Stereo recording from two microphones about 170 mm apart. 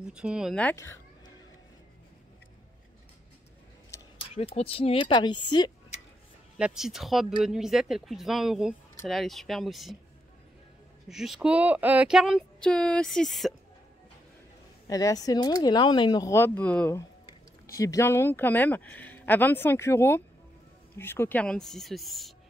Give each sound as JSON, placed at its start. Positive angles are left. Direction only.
{"t": 0.0, "sound": "speech", "side_deg": -5}
{"t": 0.6, "sound": "speech", "side_deg": 10}
{"t": 4.4, "sound": "speech", "side_deg": 35}
{"t": 6.6, "sound": "speech", "side_deg": 0}
{"t": 11.1, "sound": "speech", "side_deg": 0}
{"t": 14.9, "sound": "speech", "side_deg": 20}